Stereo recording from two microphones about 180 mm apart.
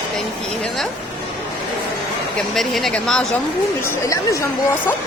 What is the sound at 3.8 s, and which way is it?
Speech, 15° left (ahead or behind).